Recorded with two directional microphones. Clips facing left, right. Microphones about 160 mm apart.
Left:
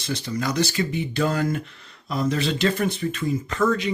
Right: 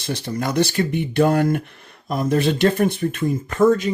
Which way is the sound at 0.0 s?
55° right (ahead or behind).